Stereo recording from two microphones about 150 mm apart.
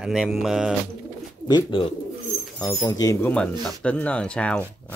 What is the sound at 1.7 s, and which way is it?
Speech, 35° left (ahead or behind).